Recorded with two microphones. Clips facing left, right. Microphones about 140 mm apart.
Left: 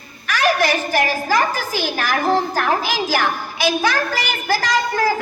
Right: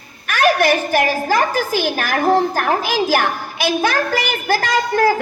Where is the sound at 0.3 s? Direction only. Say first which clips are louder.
Right 3 dB; 55° right (ahead or behind).